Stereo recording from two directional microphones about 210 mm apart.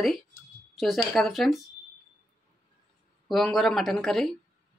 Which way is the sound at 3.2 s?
Centre (ahead or behind).